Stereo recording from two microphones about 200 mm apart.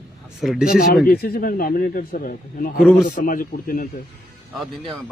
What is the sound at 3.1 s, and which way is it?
Speech, 40° left (ahead or behind).